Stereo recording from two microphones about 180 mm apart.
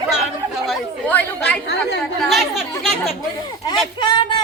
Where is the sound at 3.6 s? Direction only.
25° left (ahead or behind).